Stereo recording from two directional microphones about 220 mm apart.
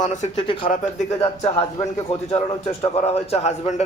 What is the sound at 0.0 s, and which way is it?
Speech, 30° left (ahead or behind).